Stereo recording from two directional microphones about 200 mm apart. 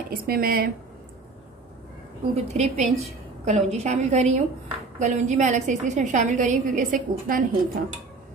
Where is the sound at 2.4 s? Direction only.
35° right (ahead or behind).